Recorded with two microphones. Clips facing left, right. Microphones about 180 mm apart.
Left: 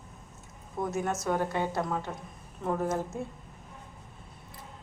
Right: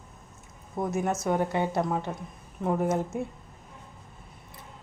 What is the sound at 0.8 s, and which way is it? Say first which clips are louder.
A woman's voice: right 3 dB; 25° right (ahead or behind).